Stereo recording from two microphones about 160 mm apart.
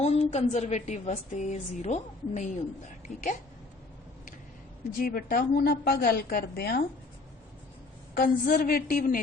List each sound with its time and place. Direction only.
0.0 s a woman's voice: 40° left (ahead or behind)
4.9 s a woman's voice: 65° left (ahead or behind)
8.1 s a woman's voice: 65° left (ahead or behind)